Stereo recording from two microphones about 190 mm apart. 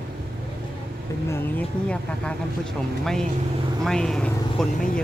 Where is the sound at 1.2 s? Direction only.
10° left (ahead or behind).